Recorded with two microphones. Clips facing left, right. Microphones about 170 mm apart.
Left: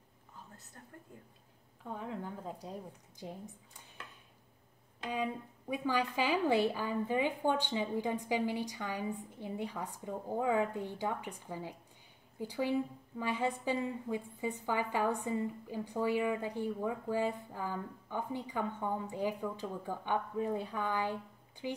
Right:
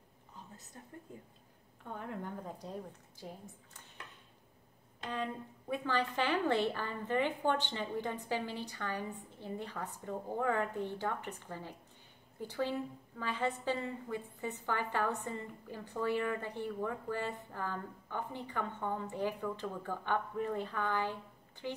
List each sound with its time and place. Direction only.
0.8 s speech: 15° right (ahead or behind)
1.9 s a woman's voice: 5° left (ahead or behind)
3.2 s speech: 20° left (ahead or behind)
5.0 s a woman's voice: 10° left (ahead or behind)